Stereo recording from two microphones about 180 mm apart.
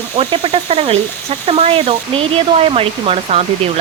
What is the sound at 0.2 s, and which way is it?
Speech, 30° right (ahead or behind).